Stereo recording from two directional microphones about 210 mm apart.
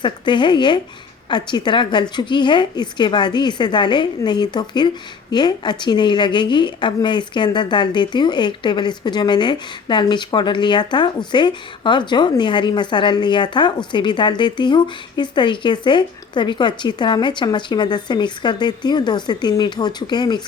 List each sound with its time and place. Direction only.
0.0 s a woman's voice: 20° left (ahead or behind)